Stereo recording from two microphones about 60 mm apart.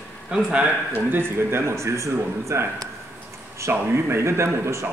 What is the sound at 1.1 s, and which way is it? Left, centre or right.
A man's voice, right.